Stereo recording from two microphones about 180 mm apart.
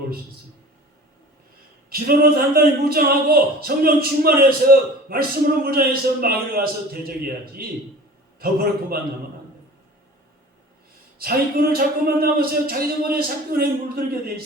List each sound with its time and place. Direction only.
1.9 s a man's voice: 55° right (ahead or behind)
11.2 s a man's voice: 55° right (ahead or behind)